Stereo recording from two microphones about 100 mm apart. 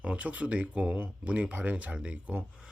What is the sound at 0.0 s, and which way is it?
Speech, 10° right (ahead or behind).